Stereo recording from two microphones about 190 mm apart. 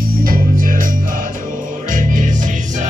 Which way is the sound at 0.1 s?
50° right (ahead or behind).